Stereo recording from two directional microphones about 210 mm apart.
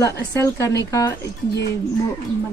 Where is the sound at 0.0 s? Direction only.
15° left (ahead or behind).